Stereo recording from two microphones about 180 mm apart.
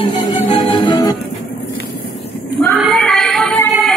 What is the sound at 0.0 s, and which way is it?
Music, 30° left (ahead or behind).